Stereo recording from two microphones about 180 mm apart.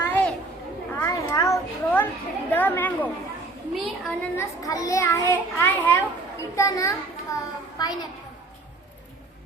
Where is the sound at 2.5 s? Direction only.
10° left (ahead or behind).